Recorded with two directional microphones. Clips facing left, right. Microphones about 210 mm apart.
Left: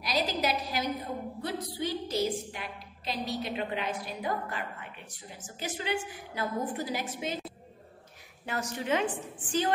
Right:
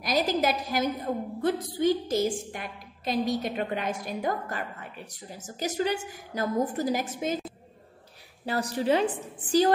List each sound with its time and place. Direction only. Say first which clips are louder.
0.0 s a woman's voice: right 5 dB; 50° right (ahead or behind)
8.5 s a woman's voice: right 6 dB; 35° right (ahead or behind)